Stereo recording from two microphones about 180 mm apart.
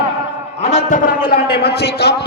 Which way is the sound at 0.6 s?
40° left (ahead or behind).